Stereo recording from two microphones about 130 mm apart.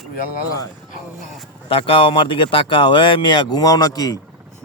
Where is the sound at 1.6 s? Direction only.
45° left (ahead or behind).